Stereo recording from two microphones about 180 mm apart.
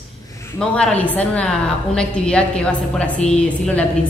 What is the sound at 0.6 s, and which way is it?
A woman's voice, 5° left (ahead or behind).